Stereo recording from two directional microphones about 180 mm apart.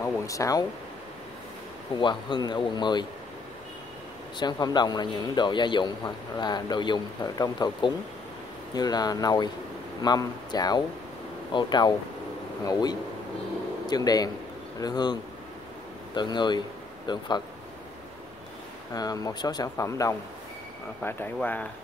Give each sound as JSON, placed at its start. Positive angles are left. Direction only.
{"t": 0.0, "sound": "speech", "side_deg": 15}
{"t": 2.0, "sound": "a man's voice", "side_deg": 25}
{"t": 4.4, "sound": "a man's voice", "side_deg": 25}
{"t": 13.8, "sound": "a man's voice", "side_deg": 20}
{"t": 16.2, "sound": "a man's voice", "side_deg": 25}
{"t": 18.9, "sound": "a man's voice", "side_deg": 20}